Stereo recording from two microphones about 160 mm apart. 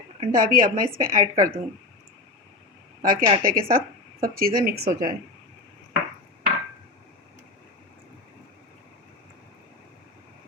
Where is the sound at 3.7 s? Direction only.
65° right (ahead or behind).